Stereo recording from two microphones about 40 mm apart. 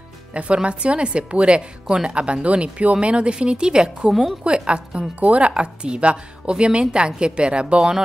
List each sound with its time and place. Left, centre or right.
0.3 s a woman's voice: right
4.1 s a woman's voice: centre
4.5 s a woman's voice: right